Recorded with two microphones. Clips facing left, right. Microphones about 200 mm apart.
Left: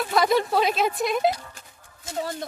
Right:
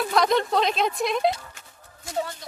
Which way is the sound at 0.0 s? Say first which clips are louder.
Even; centre (ahead or behind).